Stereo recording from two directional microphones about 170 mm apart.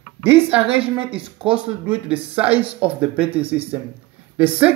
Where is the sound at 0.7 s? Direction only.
35° right (ahead or behind).